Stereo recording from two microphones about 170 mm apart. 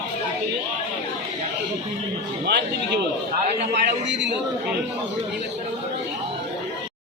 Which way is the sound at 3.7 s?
90° right.